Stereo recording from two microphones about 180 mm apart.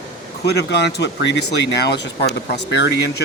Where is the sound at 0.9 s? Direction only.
75° left (ahead or behind).